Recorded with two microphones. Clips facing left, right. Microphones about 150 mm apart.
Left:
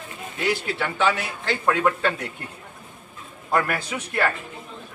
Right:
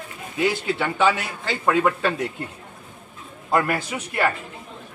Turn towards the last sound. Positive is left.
turn(degrees=-20)  # may be behind; listen again after turning